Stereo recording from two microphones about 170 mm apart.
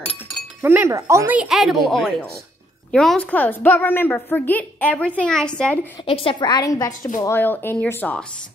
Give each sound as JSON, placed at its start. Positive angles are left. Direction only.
{"t": 0.6, "sound": "a woman's voice", "side_deg": -10}
{"t": 6.0, "sound": "a woman's voice", "side_deg": 30}